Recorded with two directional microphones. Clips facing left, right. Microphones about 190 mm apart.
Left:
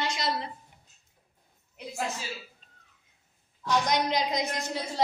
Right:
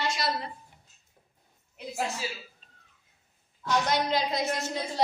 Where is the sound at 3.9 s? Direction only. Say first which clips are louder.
Even; 15° left (ahead or behind).